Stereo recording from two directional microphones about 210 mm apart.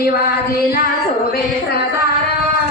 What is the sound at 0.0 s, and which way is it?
Child singing, 50° left (ahead or behind).